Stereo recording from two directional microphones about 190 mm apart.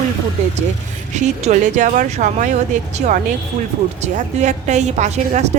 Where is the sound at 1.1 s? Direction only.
40° right (ahead or behind).